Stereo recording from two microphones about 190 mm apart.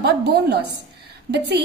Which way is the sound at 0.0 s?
60° right (ahead or behind).